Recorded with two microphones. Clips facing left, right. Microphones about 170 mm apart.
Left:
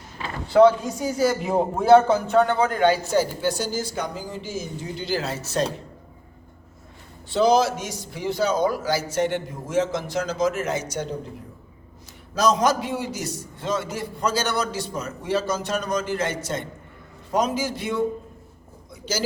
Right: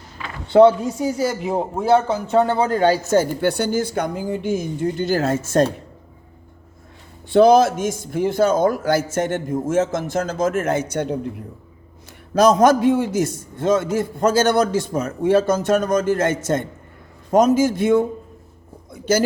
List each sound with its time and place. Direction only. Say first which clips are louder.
0.5 s a man's voice: right 3 dB; 25° right (ahead or behind); by 5.7 s 50° right (ahead or behind)
7.3 s a man's voice: right 6 dB; 55° right (ahead or behind)
12.3 s a man's voice: right 7 dB; 55° right (ahead or behind)
19.1 s a man's voice: right 10 dB; 55° right (ahead or behind)